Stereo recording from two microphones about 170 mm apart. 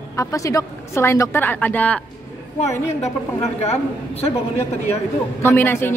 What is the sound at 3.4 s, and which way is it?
Speech, 40° left (ahead or behind).